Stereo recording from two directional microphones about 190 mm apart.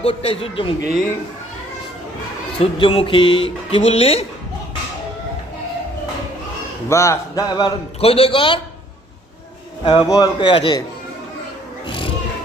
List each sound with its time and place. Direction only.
0.0 s speech: 30° left (ahead or behind)
2.6 s speech: 30° left (ahead or behind)
6.8 s speech: 15° left (ahead or behind)
8.0 s speech: 30° left (ahead or behind)
9.8 s speech: 25° left (ahead or behind)
11.9 s wild animals: 25° left (ahead or behind)